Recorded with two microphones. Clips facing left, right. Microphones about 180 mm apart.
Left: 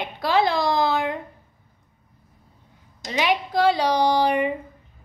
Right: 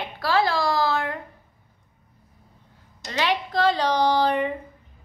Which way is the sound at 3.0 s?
15° left (ahead or behind).